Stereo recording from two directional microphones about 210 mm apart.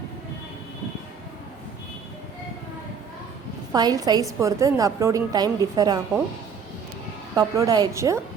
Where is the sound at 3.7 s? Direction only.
20° right (ahead or behind).